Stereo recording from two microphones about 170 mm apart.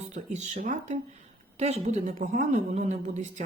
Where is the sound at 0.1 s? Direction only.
45° right (ahead or behind).